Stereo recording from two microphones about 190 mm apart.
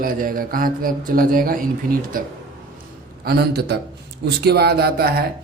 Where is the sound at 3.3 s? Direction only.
55° right (ahead or behind).